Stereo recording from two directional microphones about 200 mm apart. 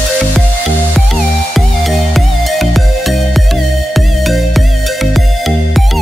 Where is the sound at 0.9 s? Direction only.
Centre (ahead or behind).